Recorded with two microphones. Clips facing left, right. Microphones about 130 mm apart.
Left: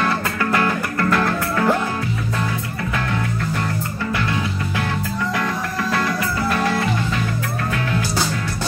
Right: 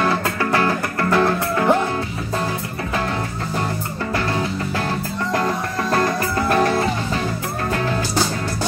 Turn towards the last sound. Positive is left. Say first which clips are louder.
# right 3 dB
turn(degrees=-40)  # may be behind; listen again after turning